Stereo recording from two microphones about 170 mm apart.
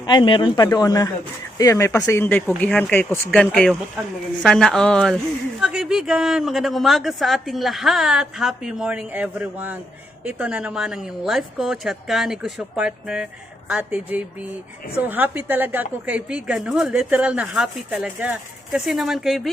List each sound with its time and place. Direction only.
0.0 s a woman's voice: 25° left (ahead or behind); by 19.4 s centre (ahead or behind)